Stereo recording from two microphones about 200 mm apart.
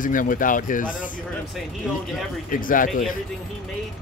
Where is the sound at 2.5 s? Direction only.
45° left (ahead or behind).